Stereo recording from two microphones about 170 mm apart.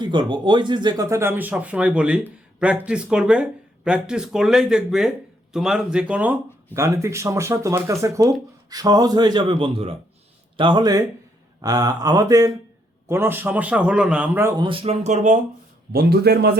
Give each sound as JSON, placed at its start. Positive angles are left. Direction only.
{"t": 0.0, "sound": "speech", "side_deg": -25}
{"t": 14.6, "sound": "speech", "side_deg": -30}
{"t": 15.9, "sound": "speech", "side_deg": -70}